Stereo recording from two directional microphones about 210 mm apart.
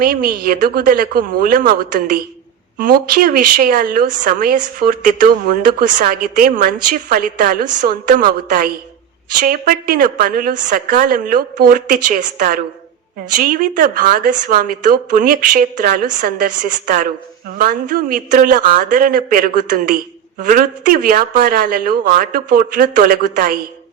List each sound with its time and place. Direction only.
0.0 s speech: 45° right (ahead or behind)